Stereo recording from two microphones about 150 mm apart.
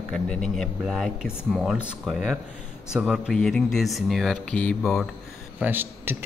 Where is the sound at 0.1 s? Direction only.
5° left (ahead or behind).